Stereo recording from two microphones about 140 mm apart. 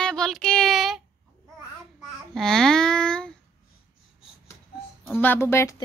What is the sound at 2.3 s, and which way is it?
Babbling, 5° left (ahead or behind).